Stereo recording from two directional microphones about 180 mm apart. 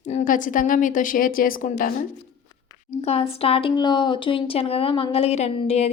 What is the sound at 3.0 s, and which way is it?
Speech, 35° left (ahead or behind).